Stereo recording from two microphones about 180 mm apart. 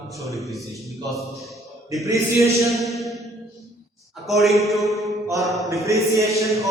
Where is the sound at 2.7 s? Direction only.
Centre (ahead or behind).